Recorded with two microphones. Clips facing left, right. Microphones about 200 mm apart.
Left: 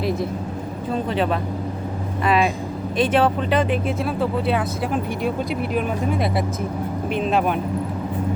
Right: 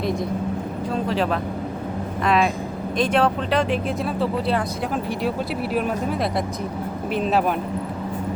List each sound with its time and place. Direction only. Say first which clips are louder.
0.0 s a sound: left 1 dB; 5° left (ahead or behind)
1.0 s speech: even; centre (ahead or behind)
5.7 s speech: even; centre (ahead or behind)